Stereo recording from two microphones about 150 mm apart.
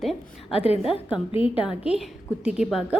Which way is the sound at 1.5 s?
5° right (ahead or behind).